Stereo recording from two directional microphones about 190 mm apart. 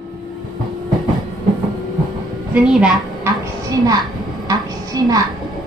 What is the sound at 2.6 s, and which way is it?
Speech, 5° right (ahead or behind).